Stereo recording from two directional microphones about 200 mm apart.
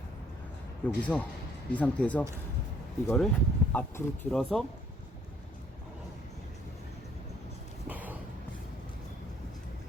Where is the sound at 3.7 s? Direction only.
10° left (ahead or behind).